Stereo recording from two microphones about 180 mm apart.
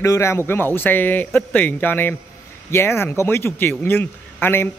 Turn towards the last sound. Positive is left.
turn(degrees=10)  # may be behind; listen again after turning